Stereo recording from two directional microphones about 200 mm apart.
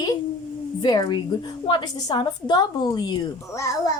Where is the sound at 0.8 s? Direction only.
20° left (ahead or behind).